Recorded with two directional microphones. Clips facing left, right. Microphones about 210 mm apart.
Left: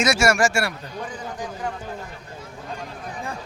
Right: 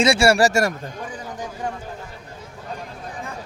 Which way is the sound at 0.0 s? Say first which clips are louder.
Right 3 dB; 30° right (ahead or behind).